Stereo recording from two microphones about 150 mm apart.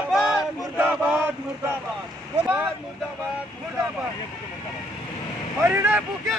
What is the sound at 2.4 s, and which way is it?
Speech, 15° right (ahead or behind).